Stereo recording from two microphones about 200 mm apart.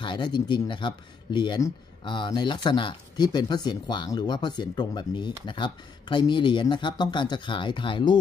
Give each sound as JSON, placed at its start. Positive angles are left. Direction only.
{"t": 0.0, "sound": "speech", "side_deg": 25}